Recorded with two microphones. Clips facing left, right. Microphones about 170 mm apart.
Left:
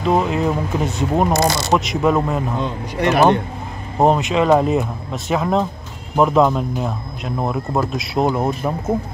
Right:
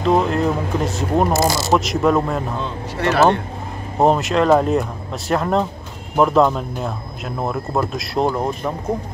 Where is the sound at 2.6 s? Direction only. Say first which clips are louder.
Left 2 dB; 15° left (ahead or behind).